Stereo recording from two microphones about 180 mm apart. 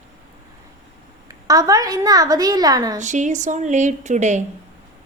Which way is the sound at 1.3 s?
20° right (ahead or behind).